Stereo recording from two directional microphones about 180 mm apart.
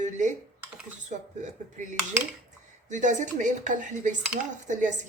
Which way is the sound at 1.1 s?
40° right (ahead or behind).